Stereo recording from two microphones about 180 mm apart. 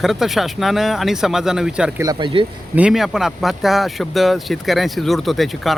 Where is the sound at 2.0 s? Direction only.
25° right (ahead or behind).